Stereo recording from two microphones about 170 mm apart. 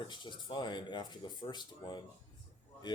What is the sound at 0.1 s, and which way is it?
Speech, 30° left (ahead or behind).